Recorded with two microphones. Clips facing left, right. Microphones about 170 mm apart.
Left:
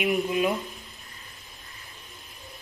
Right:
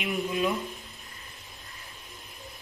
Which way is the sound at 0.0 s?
15° left (ahead or behind).